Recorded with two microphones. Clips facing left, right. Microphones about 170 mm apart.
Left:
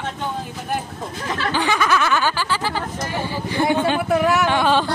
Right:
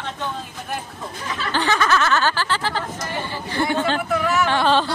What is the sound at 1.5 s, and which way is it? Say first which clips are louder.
Snicker: right 1 dB; 10° left (ahead or behind).